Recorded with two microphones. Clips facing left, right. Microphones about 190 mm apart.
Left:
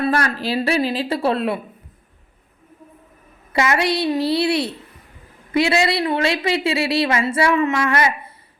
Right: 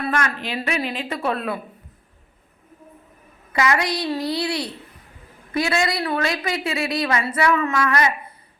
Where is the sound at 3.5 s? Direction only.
25° left (ahead or behind).